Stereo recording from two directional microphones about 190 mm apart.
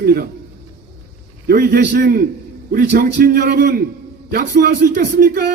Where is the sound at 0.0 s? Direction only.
55° right (ahead or behind).